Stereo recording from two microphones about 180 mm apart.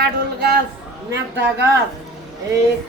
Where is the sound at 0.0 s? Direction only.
65° right (ahead or behind).